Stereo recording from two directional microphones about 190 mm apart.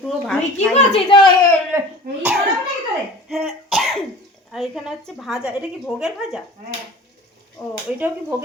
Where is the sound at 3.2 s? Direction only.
Centre (ahead or behind).